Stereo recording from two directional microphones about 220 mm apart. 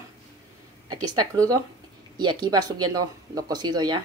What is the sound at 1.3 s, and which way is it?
Speech, 15° right (ahead or behind).